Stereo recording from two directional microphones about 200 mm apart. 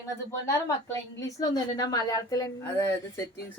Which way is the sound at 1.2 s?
20° left (ahead or behind).